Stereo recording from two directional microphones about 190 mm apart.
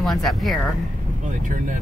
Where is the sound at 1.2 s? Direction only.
45° right (ahead or behind).